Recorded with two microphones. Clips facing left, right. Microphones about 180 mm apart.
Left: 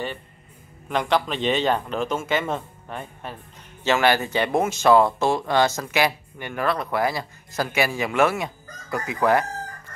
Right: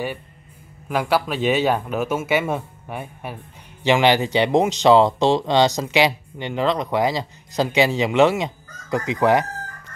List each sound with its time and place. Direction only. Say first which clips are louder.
0.8 s speech: right 2 dB; 5° right (ahead or behind)